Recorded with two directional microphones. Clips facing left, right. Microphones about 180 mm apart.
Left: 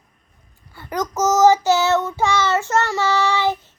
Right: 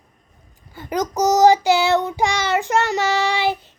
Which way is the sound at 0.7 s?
20° right (ahead or behind).